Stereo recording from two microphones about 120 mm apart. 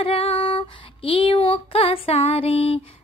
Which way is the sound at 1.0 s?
50° left (ahead or behind).